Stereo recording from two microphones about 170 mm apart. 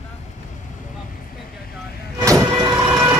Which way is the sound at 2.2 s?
20° right (ahead or behind).